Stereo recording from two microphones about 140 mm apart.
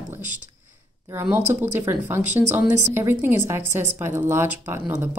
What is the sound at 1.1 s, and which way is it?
A woman's voice, 15° right (ahead or behind).